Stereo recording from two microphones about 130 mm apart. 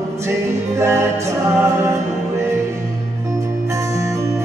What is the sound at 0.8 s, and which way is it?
Music, 20° right (ahead or behind).